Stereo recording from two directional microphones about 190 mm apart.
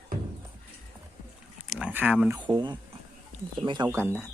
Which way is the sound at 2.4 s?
25° right (ahead or behind).